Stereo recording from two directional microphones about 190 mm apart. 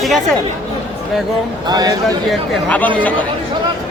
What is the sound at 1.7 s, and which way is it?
Speech, 20° right (ahead or behind).